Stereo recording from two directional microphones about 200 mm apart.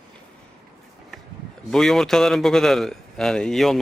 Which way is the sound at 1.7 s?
Centre (ahead or behind).